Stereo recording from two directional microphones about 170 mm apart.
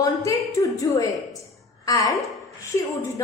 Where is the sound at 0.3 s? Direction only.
20° left (ahead or behind).